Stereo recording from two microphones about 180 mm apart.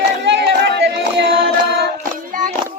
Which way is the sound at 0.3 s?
70° right (ahead or behind).